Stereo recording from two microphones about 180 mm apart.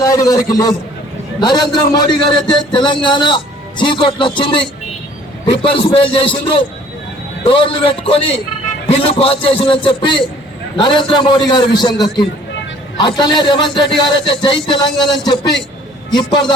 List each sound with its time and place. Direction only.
0.0 s a man's voice: 20° left (ahead or behind)